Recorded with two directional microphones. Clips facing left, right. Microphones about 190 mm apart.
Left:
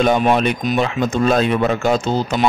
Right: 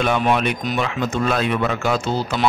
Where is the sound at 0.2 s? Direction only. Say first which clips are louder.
Left 3 dB; 30° left (ahead or behind).